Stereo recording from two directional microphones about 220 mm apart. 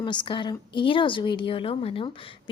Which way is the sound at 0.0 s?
20° left (ahead or behind).